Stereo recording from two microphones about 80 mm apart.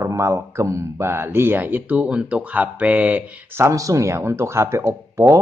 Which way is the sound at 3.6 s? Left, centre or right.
Right.